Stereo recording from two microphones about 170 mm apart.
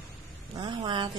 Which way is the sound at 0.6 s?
25° right (ahead or behind).